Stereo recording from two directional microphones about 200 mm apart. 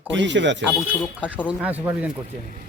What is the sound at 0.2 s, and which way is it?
Speech, 65° right (ahead or behind).